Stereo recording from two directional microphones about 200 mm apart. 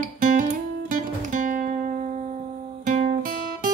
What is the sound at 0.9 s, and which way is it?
Music, 40° right (ahead or behind).